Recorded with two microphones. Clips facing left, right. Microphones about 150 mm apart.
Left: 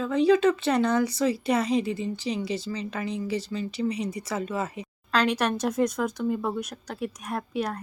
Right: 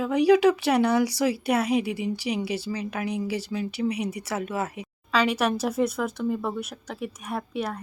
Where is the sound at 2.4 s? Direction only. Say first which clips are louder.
Right 1 dB; 65° right (ahead or behind).